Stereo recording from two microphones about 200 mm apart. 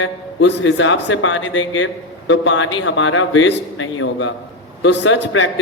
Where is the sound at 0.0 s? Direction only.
70° left (ahead or behind).